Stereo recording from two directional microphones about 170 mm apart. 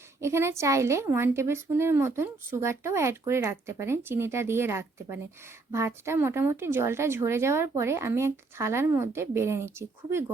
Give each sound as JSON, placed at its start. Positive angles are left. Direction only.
{"t": 0.2, "sound": "a woman's voice", "side_deg": -15}